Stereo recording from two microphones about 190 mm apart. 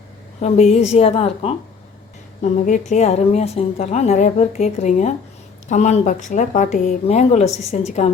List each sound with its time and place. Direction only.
0.4 s a woman's voice: 35° left (ahead or behind)
2.4 s a woman's voice: 40° left (ahead or behind)